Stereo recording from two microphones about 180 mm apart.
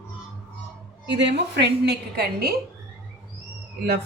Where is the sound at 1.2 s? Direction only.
75° right (ahead or behind).